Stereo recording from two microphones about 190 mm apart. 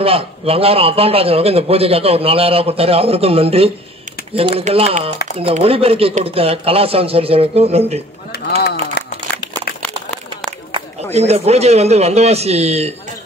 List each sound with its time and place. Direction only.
0.0 s a man's voice: 30° right (ahead or behind)
8.3 s a sound: 55° left (ahead or behind)
10.7 s a man's voice: 35° right (ahead or behind)